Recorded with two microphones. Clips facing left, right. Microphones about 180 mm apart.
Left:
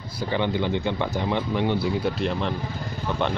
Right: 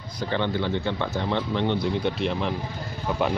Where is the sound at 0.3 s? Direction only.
15° left (ahead or behind).